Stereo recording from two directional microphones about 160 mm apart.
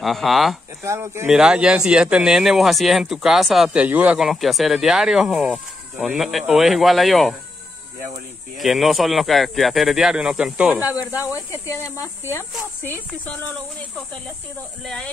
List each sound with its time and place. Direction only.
0.0 s speech: centre (ahead or behind)
0.8 s speech: 15° right (ahead or behind)
1.3 s speech: 5° right (ahead or behind)
8.5 s speech: centre (ahead or behind)
11.1 s speech: 20° left (ahead or behind)